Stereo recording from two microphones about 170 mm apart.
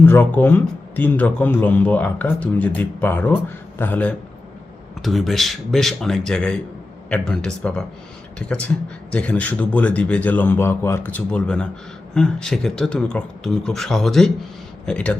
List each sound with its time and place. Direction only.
0.0 s speech: 10° left (ahead or behind)
5.0 s speech: centre (ahead or behind)